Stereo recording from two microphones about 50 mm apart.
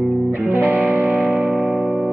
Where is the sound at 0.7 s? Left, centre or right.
Right.